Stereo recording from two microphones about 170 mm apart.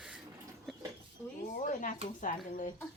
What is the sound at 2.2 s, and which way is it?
Speech, 50° left (ahead or behind).